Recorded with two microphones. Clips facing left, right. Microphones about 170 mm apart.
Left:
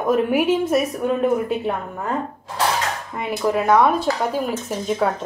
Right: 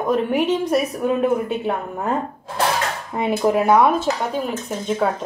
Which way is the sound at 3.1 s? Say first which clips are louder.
Right 4 dB; 25° right (ahead or behind).